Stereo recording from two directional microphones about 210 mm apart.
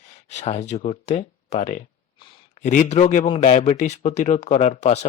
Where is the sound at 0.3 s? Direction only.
30° left (ahead or behind).